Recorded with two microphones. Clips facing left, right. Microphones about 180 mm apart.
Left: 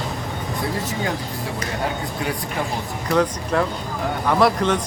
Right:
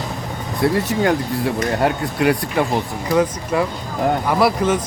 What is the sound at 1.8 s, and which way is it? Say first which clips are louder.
Speech: right 9 dB; 70° right (ahead or behind).